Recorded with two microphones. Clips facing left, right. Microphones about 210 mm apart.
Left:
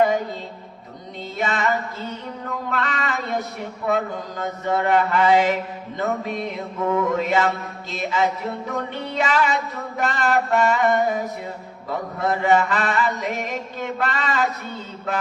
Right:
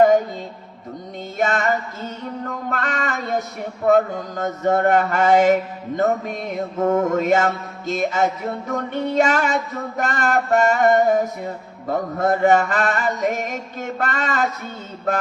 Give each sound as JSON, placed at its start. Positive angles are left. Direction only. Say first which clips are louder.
{"t": 1.4, "sound": "music", "louder": "right 3 dB", "side_deg": -45}